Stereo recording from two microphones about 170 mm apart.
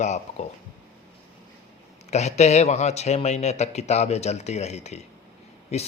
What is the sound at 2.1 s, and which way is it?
Speech, 40° left (ahead or behind).